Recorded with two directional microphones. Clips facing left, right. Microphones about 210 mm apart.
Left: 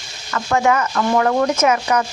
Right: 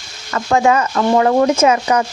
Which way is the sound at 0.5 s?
25° right (ahead or behind).